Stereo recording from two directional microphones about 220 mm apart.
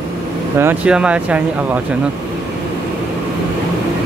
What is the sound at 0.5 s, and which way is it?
Speech, 5° right (ahead or behind).